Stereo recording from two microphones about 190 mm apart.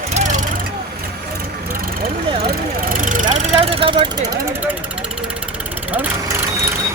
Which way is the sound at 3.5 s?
30° right (ahead or behind).